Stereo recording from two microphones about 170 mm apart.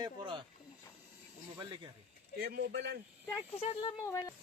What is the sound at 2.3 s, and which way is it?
Speech, 70° right (ahead or behind).